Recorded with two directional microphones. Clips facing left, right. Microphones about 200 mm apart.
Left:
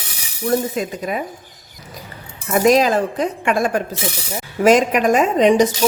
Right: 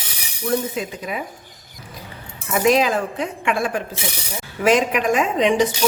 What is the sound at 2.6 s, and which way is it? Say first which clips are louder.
A woman's voice: left 3 dB; 40° left (ahead or behind).